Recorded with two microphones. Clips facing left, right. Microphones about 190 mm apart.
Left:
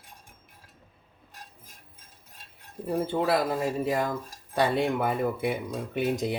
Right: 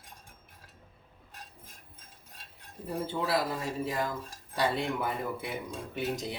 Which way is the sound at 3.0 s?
55° left (ahead or behind).